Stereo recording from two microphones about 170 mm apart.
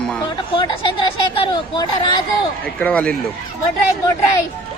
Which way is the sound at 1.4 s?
25° left (ahead or behind).